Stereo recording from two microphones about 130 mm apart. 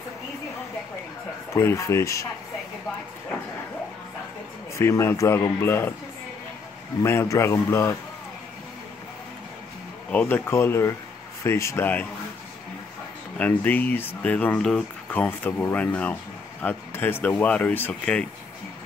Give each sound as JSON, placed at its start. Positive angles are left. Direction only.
{"t": 1.5, "sound": "a man's voice", "side_deg": 20}
{"t": 4.7, "sound": "a man's voice", "side_deg": 20}
{"t": 7.0, "sound": "a man's voice", "side_deg": 20}
{"t": 10.0, "sound": "a man's voice", "side_deg": 15}
{"t": 13.4, "sound": "speech", "side_deg": 15}